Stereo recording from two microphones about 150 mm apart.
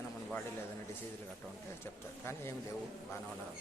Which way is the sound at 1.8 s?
15° left (ahead or behind).